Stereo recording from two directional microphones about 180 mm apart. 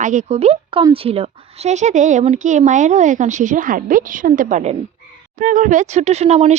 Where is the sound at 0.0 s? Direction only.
40° right (ahead or behind).